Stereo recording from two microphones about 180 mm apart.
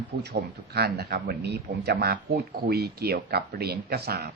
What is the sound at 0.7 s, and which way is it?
Speech, 65° right (ahead or behind).